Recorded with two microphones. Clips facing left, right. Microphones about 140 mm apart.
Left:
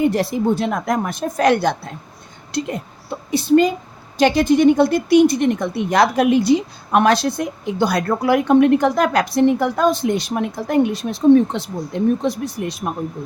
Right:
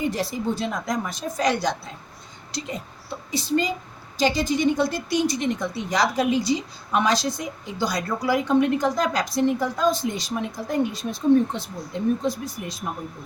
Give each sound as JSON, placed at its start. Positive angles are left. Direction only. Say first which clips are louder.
{"t": 0.0, "sound": "a woman's voice", "louder": "left 8 dB", "side_deg": 60}